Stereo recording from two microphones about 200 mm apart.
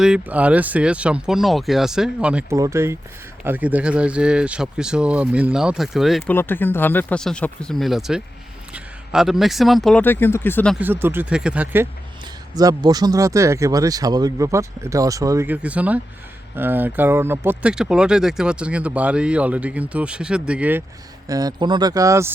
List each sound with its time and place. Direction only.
0.0 s speech: 5° right (ahead or behind)
10.8 s speech: 10° right (ahead or behind)
12.5 s speech: 20° right (ahead or behind)
21.2 s speech: 20° right (ahead or behind)